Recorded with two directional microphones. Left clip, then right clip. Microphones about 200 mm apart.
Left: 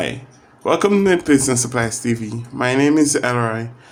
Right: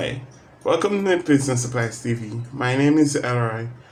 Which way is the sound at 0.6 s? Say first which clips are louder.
Left 4 dB; 35° left (ahead or behind).